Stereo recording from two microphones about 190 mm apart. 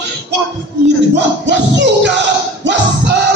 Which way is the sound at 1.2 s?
65° right (ahead or behind).